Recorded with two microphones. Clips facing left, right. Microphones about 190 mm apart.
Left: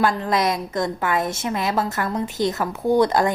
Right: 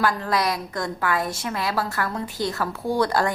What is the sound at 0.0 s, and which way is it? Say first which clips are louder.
A woman's voice: left 3 dB; 20° left (ahead or behind).